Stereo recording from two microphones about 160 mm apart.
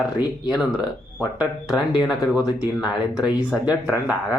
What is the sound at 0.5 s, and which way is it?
Speech, 25° left (ahead or behind).